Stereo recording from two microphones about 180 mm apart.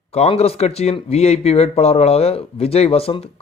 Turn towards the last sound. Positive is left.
turn(degrees=35)  # may be behind; listen again after turning